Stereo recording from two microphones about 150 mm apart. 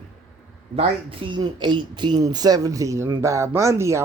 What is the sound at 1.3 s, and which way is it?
Speech, 30° right (ahead or behind).